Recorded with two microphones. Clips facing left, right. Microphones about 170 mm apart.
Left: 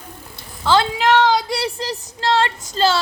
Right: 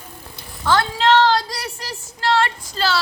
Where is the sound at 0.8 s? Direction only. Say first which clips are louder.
Even; 15° left (ahead or behind).